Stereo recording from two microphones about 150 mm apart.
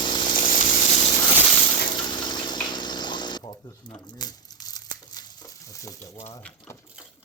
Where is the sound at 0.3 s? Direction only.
65° left (ahead or behind).